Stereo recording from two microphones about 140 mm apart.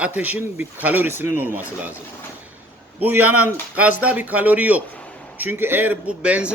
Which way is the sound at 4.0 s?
10° right (ahead or behind).